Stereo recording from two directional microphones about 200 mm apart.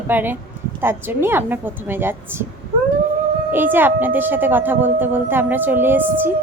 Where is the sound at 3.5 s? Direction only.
10° right (ahead or behind).